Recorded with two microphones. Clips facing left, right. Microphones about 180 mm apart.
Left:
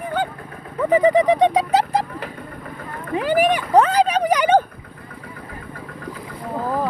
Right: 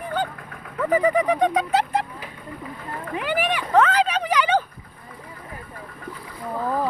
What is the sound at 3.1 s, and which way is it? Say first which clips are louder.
Speech: left 7 dB; 40° left (ahead or behind).